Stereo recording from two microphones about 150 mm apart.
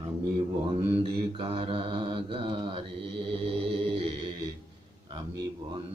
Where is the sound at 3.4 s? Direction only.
35° right (ahead or behind).